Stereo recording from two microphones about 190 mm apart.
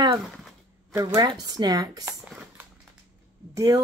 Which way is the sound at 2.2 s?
10° right (ahead or behind).